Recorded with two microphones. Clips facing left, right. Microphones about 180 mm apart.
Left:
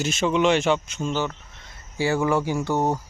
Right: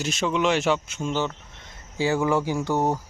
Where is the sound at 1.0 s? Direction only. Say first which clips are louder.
Right 1 dB; 15° right (ahead or behind).